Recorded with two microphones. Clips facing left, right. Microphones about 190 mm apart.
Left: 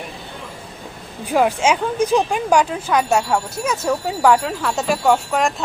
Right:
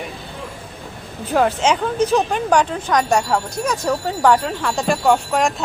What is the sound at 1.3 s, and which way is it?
Speech, 10° left (ahead or behind).